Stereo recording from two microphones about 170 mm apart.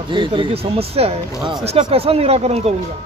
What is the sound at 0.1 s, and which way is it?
Speech, 30° right (ahead or behind).